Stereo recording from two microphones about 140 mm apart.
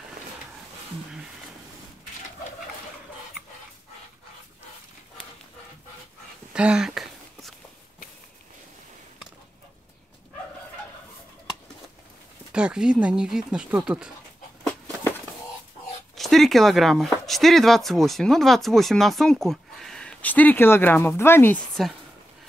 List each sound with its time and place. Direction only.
6.5 s a sound: 5° right (ahead or behind)
12.5 s speech: 5° right (ahead or behind)
16.2 s speech: centre (ahead or behind); by 21.5 s 15° left (ahead or behind)
21.8 s speech: centre (ahead or behind)